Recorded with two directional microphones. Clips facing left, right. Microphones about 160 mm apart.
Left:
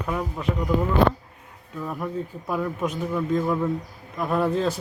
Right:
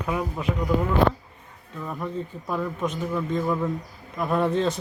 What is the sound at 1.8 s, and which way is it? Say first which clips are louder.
A man's voice: left 1 dB; 5° left (ahead or behind).